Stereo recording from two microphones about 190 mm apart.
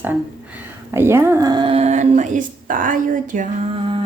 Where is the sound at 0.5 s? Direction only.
10° right (ahead or behind); by 3.5 s 45° right (ahead or behind).